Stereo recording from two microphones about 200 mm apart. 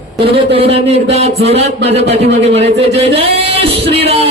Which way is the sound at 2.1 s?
30° right (ahead or behind).